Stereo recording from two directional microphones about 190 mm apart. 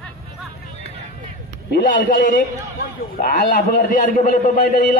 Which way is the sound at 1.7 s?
55° left (ahead or behind).